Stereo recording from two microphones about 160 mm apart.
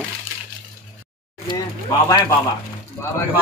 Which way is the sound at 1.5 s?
25° left (ahead or behind).